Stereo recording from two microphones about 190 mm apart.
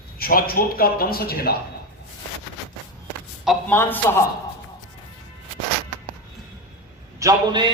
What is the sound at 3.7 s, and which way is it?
Speech, 10° left (ahead or behind).